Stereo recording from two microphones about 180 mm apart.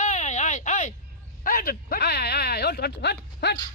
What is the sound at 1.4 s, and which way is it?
Speech, 55° left (ahead or behind).